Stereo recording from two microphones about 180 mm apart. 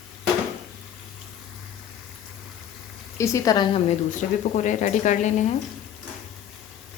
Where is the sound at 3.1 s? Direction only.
15° left (ahead or behind).